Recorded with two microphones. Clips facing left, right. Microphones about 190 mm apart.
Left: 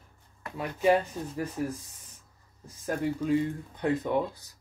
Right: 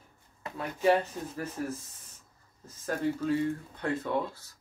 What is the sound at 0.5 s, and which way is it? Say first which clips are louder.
Speech: left 1 dB; 15° left (ahead or behind).